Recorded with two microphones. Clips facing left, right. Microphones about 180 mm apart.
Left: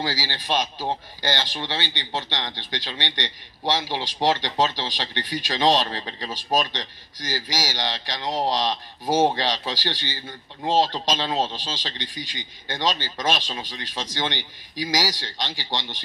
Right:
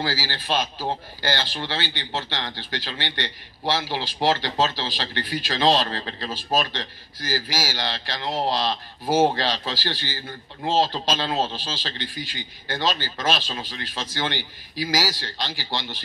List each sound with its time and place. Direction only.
0.0 s speech: 15° left (ahead or behind)